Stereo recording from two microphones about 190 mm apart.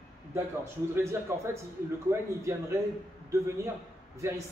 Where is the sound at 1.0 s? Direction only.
15° right (ahead or behind).